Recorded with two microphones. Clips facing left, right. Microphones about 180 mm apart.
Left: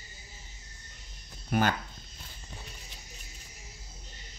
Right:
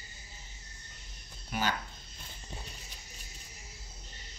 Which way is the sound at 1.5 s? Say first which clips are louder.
Left 6 dB; 50° left (ahead or behind).